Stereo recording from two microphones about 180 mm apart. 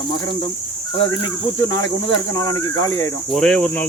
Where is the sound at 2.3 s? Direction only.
20° left (ahead or behind).